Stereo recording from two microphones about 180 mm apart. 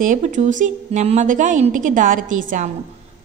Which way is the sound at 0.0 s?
45° right (ahead or behind).